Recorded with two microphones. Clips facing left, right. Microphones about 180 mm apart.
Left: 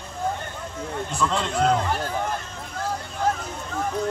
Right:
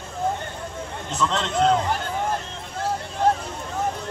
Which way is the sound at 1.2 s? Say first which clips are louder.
Right 1 dB; 10° left (ahead or behind).